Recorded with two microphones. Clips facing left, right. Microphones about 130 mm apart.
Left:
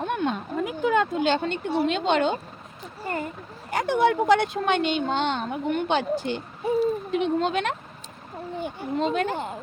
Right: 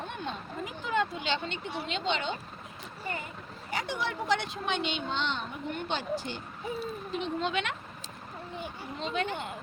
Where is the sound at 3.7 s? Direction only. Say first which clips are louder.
Left 12 dB; 55° left (ahead or behind).